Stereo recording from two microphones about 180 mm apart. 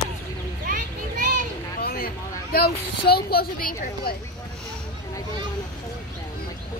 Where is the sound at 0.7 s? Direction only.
45° right (ahead or behind).